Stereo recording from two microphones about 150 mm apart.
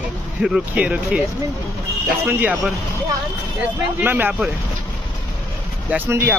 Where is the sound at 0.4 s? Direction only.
5° right (ahead or behind).